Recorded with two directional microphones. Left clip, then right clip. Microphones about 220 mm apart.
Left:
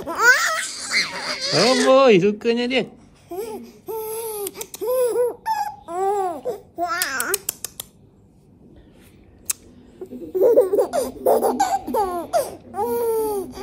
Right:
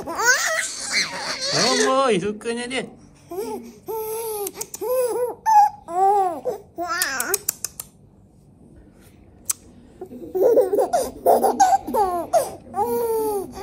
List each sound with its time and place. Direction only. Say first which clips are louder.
0.1 s a sound: left 3 dB; centre (ahead or behind)
1.9 s speech: left 6 dB; 30° left (ahead or behind)
3.3 s baby cry: right 1 dB; 5° right (ahead or behind)
4.6 s a sound: left 2 dB; centre (ahead or behind)
6.4 s babbling: left 1 dB; 5° right (ahead or behind)
10.3 s laughter: left 1 dB; centre (ahead or behind)